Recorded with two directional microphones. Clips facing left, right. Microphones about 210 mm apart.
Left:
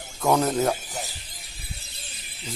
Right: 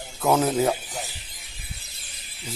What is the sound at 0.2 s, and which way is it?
Speech, 5° right (ahead or behind).